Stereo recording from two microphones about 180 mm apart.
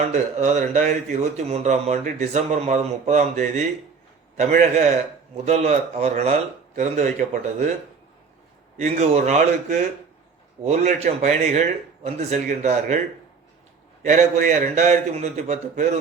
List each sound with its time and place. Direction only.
0.1 s speech: 40° right (ahead or behind)
8.8 s speech: 40° right (ahead or behind)
14.0 s speech: 45° right (ahead or behind)